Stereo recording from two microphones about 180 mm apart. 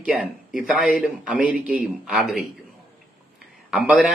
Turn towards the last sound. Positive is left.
turn(degrees=-5)  # may be behind; listen again after turning